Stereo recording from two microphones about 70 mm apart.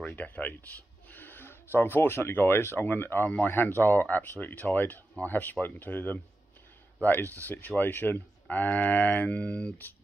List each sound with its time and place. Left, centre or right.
0.1 s speech: left